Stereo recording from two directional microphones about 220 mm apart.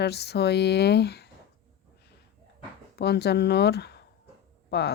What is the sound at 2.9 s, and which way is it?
Speech, 50° left (ahead or behind).